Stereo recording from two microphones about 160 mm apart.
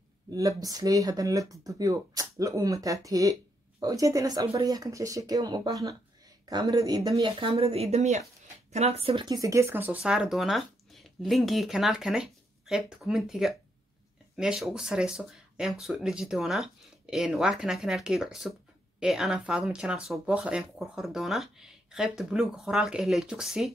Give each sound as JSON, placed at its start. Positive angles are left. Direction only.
{"t": 0.3, "sound": "speech", "side_deg": -20}
{"t": 7.2, "sound": "speech", "side_deg": -35}